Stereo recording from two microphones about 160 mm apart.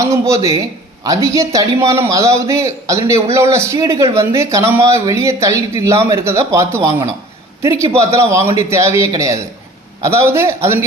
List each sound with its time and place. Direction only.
0.0 s a man's voice: 20° right (ahead or behind)